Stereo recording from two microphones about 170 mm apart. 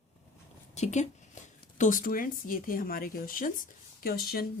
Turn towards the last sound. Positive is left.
turn(degrees=60)  # may be behind; listen again after turning